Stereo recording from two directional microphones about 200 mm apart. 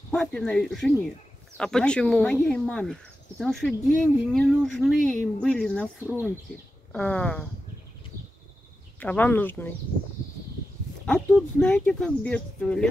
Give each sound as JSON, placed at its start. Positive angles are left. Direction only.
{"t": 0.1, "sound": "speech", "side_deg": 0}
{"t": 9.0, "sound": "speech", "side_deg": 10}
{"t": 11.1, "sound": "speech", "side_deg": 5}